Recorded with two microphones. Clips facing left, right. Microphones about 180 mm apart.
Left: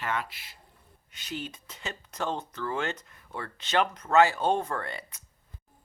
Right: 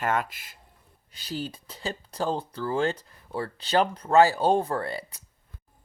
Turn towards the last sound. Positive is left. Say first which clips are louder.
# right 5 dB
turn(degrees=-35)  # may be behind; listen again after turning